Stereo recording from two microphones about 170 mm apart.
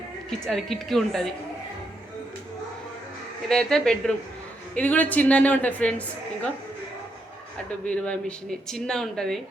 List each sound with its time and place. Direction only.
0.3 s speech: centre (ahead or behind)
3.5 s speech: 5° left (ahead or behind)
7.9 s speech: 5° left (ahead or behind)